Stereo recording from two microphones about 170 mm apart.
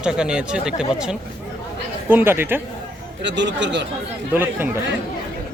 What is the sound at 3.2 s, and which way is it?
Speech, 90° right.